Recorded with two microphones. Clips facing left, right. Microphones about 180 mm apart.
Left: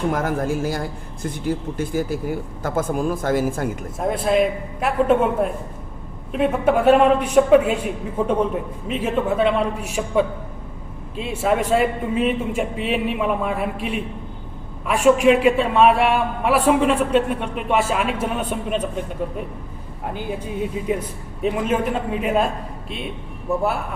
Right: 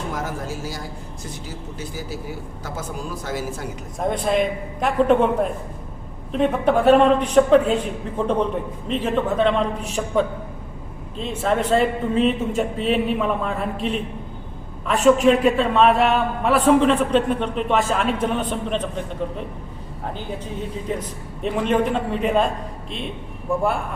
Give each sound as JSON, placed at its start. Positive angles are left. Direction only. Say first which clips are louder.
{"t": 0.1, "sound": "a man's voice", "louder": "left 6 dB", "side_deg": 55}
{"t": 4.0, "sound": "a man's voice", "louder": "left 2 dB", "side_deg": 5}
{"t": 20.1, "sound": "a man's voice", "louder": "left 6 dB", "side_deg": 10}